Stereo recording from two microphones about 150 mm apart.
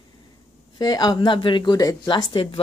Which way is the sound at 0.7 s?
30° left (ahead or behind).